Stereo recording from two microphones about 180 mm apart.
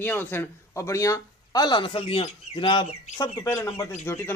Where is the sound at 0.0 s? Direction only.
10° left (ahead or behind).